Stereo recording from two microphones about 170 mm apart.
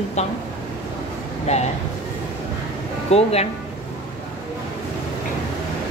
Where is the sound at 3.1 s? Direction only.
35° left (ahead or behind).